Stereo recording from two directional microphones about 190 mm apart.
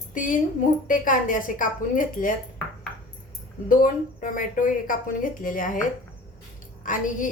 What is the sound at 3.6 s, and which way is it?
Speech, 45° left (ahead or behind).